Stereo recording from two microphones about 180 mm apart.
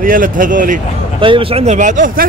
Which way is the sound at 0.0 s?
50° right (ahead or behind).